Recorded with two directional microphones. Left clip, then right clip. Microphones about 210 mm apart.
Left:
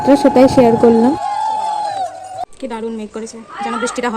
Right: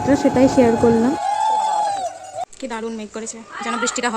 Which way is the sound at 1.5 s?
45° right (ahead or behind).